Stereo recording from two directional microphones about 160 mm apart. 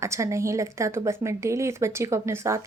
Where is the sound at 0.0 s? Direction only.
20° right (ahead or behind).